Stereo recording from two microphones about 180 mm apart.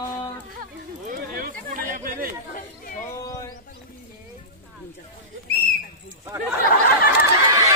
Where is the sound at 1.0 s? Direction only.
50° right (ahead or behind).